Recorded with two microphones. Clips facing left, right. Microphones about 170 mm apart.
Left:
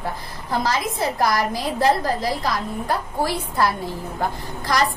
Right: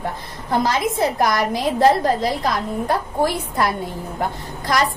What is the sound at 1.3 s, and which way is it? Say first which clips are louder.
A woman's voice: right 3 dB; 20° right (ahead or behind).